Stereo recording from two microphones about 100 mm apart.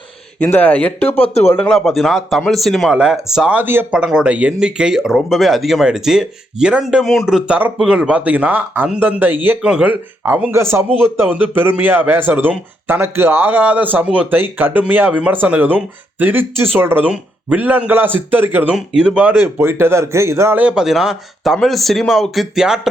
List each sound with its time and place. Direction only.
0.3 s speech: 20° left (ahead or behind)
1.2 s speech: 90° left
1.6 s speech: 5° left (ahead or behind)
3.5 s speech: 20° right (ahead or behind)
3.9 s speech: 5° right (ahead or behind)
7.0 s speech: 5° left (ahead or behind); by 18.6 s 20° right (ahead or behind)
18.7 s speech: 10° right (ahead or behind)
19.4 s speech: 25° right (ahead or behind)
20.6 s speech: 10° right (ahead or behind)